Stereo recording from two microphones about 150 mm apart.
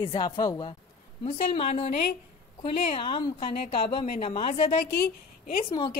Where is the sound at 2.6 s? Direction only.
30° left (ahead or behind).